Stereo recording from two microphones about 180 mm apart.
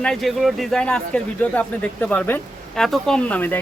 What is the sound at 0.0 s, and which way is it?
Speech, centre (ahead or behind).